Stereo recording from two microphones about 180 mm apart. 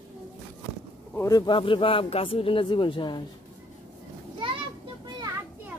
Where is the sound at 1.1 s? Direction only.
15° left (ahead or behind).